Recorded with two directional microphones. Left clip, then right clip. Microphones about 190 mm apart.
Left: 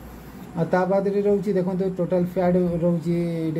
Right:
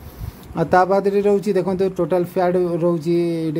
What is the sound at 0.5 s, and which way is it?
Speech, 35° right (ahead or behind).